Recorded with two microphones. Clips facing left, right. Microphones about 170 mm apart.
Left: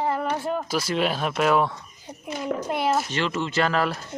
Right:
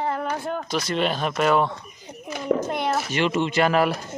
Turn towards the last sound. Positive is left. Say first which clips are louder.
# right 3 dB
turn(degrees=-15)  # may be behind; listen again after turning